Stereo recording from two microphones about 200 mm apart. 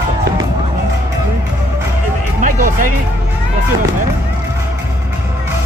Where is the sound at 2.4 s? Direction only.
40° right (ahead or behind).